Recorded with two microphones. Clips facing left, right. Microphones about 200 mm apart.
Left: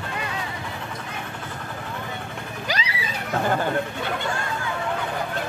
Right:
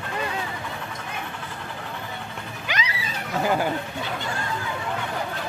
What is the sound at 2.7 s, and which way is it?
Music, 35° left (ahead or behind).